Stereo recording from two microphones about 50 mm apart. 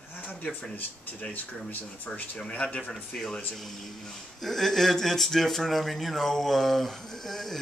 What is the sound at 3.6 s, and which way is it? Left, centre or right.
Speech, centre.